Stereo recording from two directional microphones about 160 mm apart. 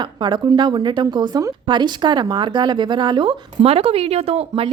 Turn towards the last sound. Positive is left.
turn(degrees=-40)  # may be behind; listen again after turning